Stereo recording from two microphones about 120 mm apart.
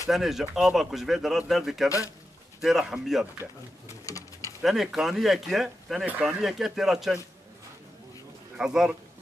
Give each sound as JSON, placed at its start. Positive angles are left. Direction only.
{"t": 0.1, "sound": "speech", "side_deg": 0}
{"t": 4.0, "sound": "pigeon", "side_deg": 25}
{"t": 4.6, "sound": "speech", "side_deg": 0}
{"t": 8.5, "sound": "speech", "side_deg": -5}